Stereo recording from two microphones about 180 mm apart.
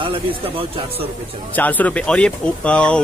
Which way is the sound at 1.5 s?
10° left (ahead or behind).